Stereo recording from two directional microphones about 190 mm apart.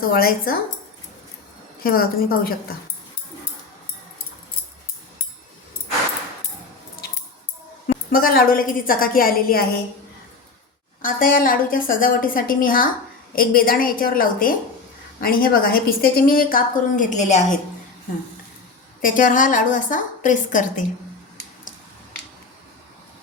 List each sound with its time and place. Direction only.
0.1 s a woman's voice: 50° left (ahead or behind)
1.8 s a woman's voice: 50° left (ahead or behind)
8.1 s a woman's voice: 50° left (ahead or behind)
11.0 s a woman's voice: 45° left (ahead or behind)
19.0 s a woman's voice: 45° left (ahead or behind)